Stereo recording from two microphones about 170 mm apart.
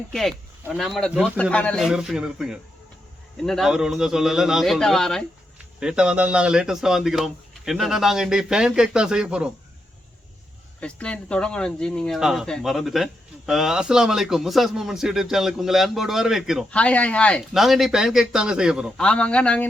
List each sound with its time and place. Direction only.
0.1 s speech: centre (ahead or behind)
10.8 s speech: 5° left (ahead or behind)